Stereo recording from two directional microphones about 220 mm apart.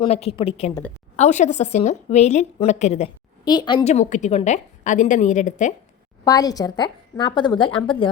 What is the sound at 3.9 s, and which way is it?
A woman's voice, 35° left (ahead or behind).